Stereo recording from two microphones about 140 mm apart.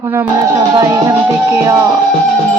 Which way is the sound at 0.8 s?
25° right (ahead or behind).